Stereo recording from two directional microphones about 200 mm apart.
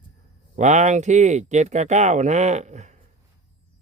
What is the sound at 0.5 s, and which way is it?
Speech, 35° right (ahead or behind).